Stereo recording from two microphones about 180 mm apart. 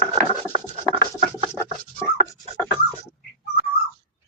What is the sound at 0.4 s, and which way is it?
Scratch, 15° left (ahead or behind).